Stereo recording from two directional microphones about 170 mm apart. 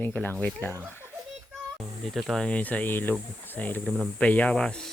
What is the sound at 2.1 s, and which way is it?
Speech, centre (ahead or behind).